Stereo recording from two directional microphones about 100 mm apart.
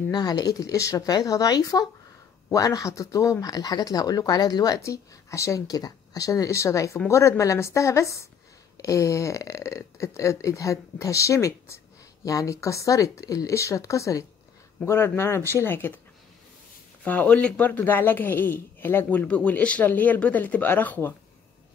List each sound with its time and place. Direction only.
0.1 s a woman's voice: 40° left (ahead or behind); by 16.0 s 20° left (ahead or behind)
17.0 s speech: 15° left (ahead or behind)